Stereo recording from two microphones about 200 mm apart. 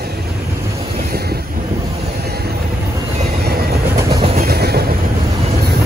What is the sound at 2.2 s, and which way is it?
Train, 50° right (ahead or behind).